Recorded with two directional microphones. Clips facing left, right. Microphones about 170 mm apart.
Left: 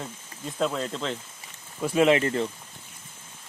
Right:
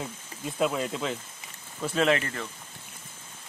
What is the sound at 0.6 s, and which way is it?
Speech, 10° right (ahead or behind).